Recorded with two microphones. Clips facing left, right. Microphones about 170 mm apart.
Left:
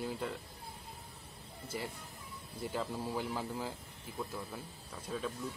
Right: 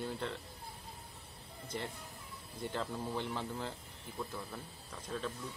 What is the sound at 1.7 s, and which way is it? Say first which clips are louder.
Speech: even; 5° left (ahead or behind).